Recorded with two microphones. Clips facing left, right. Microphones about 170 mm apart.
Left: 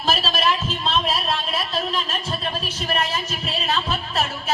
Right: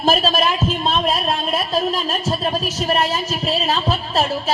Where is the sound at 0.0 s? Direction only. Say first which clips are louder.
Right 5 dB; 50° right (ahead or behind).